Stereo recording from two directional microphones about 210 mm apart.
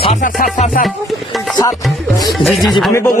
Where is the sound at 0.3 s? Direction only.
40° left (ahead or behind).